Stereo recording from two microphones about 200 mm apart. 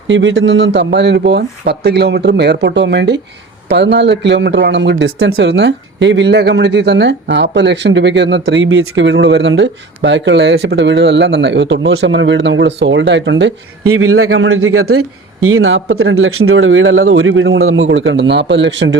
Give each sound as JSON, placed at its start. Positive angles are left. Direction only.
{"t": 0.1, "sound": "speech", "side_deg": -70}